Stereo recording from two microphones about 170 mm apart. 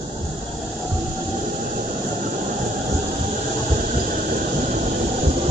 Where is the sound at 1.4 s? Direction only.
55° right (ahead or behind).